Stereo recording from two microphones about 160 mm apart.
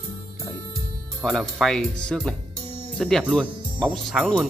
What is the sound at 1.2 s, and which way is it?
Speech, centre (ahead or behind).